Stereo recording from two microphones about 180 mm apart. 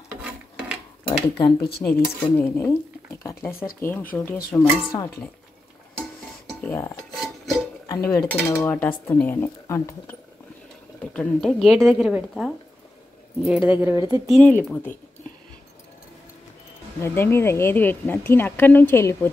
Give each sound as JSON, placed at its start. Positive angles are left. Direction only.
{"t": 0.2, "sound": "filing", "side_deg": -5}
{"t": 1.8, "sound": "a woman's voice", "side_deg": 15}
{"t": 6.6, "sound": "cutlery", "side_deg": 15}
{"t": 7.2, "sound": "music", "side_deg": 0}
{"t": 8.1, "sound": "a woman's voice", "side_deg": 10}
{"t": 11.1, "sound": "a woman's voice", "side_deg": 0}
{"t": 14.2, "sound": "a woman's voice", "side_deg": 0}
{"t": 17.0, "sound": "a woman's voice", "side_deg": 15}